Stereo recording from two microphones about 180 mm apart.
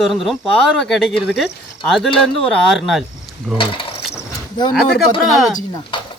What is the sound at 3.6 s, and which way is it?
Speech, 30° left (ahead or behind).